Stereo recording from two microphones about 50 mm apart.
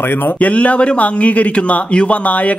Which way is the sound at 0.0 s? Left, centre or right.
Left.